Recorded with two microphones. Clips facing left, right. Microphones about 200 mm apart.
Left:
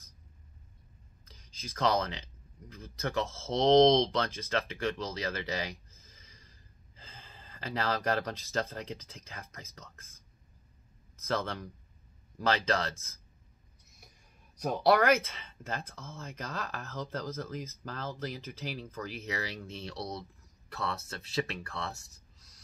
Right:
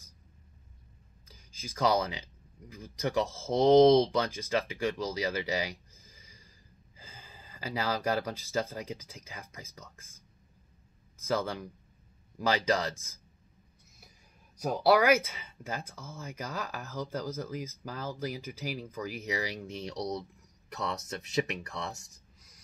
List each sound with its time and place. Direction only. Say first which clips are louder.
1.2 s a sound: right 1 dB; 10° right (ahead or behind)
2.7 s speech: right 3 dB; 10° right (ahead or behind)
11.1 s speech: right 2 dB; 10° right (ahead or behind)
14.6 s speech: right 1 dB; 5° right (ahead or behind)